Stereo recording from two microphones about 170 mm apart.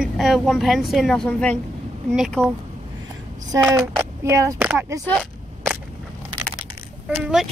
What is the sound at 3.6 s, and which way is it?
Speech, 10° right (ahead or behind).